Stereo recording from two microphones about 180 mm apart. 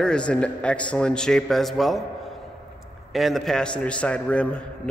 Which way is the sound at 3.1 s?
Centre (ahead or behind).